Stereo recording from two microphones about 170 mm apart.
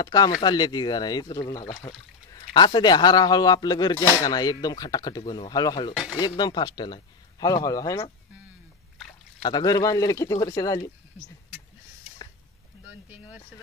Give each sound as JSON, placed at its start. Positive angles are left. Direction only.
{"t": 0.0, "sound": "speech", "side_deg": 25}
{"t": 9.4, "sound": "speech", "side_deg": 25}